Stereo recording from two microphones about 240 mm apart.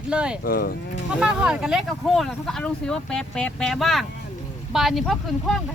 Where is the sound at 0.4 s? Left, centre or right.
Left.